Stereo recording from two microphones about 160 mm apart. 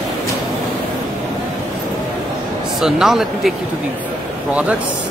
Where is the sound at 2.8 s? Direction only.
Centre (ahead or behind).